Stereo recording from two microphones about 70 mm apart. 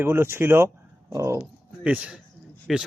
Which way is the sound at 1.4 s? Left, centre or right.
Centre.